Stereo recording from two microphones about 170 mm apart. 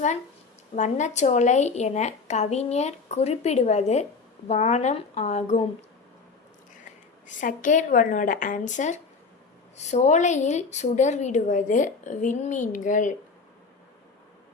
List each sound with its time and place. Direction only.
0.8 s a woman's voice: 45° left (ahead or behind)
7.3 s speech: 50° left (ahead or behind)